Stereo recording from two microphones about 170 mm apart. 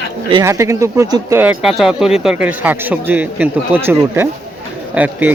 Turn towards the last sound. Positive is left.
turn(degrees=-10)  # may be behind; listen again after turning